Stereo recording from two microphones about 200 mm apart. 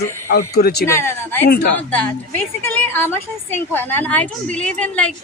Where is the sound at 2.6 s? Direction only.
10° left (ahead or behind).